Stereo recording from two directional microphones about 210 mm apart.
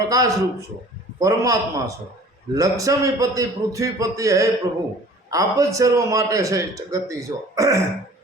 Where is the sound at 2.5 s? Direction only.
15° right (ahead or behind).